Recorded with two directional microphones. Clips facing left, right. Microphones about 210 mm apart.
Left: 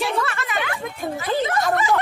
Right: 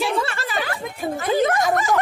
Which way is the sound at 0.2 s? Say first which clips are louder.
Even; 30° right (ahead or behind).